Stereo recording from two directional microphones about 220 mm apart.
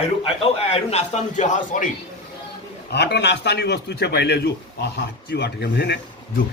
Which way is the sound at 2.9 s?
50° left (ahead or behind).